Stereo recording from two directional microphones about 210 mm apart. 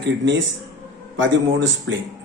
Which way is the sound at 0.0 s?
60° right (ahead or behind).